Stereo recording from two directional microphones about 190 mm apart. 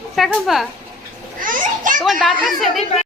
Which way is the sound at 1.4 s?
45° right (ahead or behind).